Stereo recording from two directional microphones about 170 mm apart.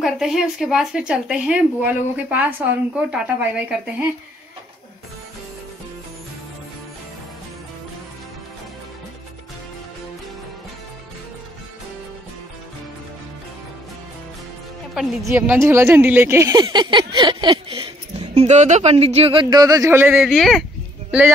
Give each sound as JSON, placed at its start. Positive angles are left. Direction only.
{"t": 0.0, "sound": "speech", "side_deg": 0}
{"t": 15.2, "sound": "speech", "side_deg": -10}
{"t": 19.5, "sound": "speech", "side_deg": -20}
{"t": 20.2, "sound": "speech", "side_deg": 0}